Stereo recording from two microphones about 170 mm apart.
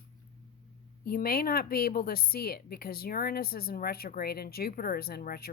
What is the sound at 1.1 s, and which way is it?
Speech, 60° left (ahead or behind).